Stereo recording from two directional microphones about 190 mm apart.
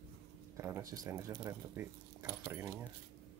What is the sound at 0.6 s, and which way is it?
Speech, 15° right (ahead or behind).